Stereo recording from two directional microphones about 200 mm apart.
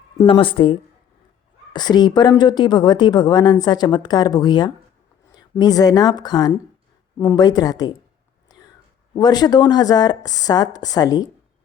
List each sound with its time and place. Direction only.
0.2 s speech: 25° left (ahead or behind)
8.4 s whispering: 20° left (ahead or behind)
9.1 s speech: 20° left (ahead or behind)